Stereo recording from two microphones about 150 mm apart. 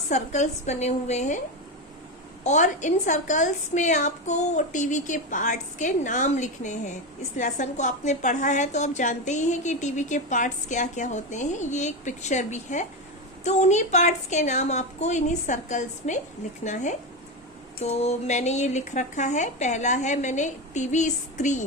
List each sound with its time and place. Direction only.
0.1 s a woman's voice: 50° left (ahead or behind)
2.4 s a woman's voice: 50° left (ahead or behind)
17.8 s a woman's voice: 45° left (ahead or behind)